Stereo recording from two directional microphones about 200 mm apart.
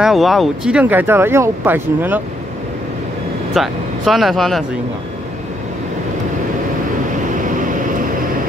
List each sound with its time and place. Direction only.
0.0 s speech: centre (ahead or behind)
3.5 s speech: centre (ahead or behind)
7.4 s vehicle: 40° right (ahead or behind)